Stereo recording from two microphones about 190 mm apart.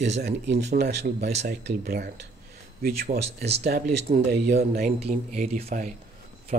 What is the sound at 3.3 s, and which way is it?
Speech, 60° right (ahead or behind).